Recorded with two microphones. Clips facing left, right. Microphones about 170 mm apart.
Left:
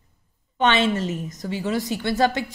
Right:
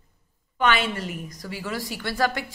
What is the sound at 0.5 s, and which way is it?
A woman's voice, 25° left (ahead or behind).